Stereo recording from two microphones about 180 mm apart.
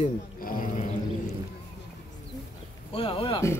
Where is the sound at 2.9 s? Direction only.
30° left (ahead or behind).